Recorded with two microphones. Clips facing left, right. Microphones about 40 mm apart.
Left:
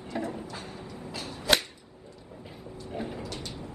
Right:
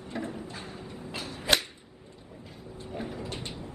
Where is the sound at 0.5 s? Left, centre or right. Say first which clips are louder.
Left 1 dB; right.